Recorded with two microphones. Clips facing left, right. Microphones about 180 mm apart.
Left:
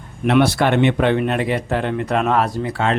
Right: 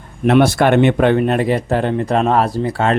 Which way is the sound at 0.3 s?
45° right (ahead or behind).